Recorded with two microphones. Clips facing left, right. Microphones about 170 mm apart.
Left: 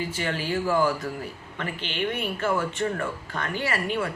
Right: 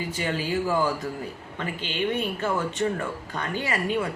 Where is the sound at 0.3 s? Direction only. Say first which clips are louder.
Right 1 dB; 15° right (ahead or behind).